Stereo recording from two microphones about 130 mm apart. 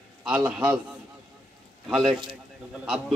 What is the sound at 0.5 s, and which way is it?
Speech, 10° right (ahead or behind).